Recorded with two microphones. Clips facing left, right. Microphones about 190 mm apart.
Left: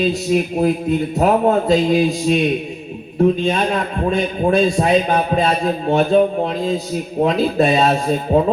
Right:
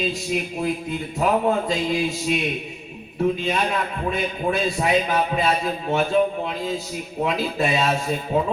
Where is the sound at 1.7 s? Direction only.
40° left (ahead or behind).